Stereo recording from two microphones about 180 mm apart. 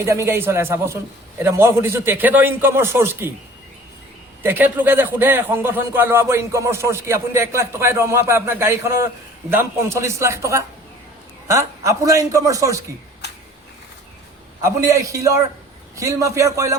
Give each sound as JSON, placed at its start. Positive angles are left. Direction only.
{"t": 0.0, "sound": "speech", "side_deg": -15}
{"t": 4.4, "sound": "speech", "side_deg": -10}
{"t": 13.2, "sound": "a sound", "side_deg": 65}
{"t": 14.6, "sound": "speech", "side_deg": -15}